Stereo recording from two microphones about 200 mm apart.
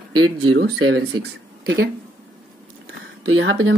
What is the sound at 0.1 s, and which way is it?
Speech, 90° right.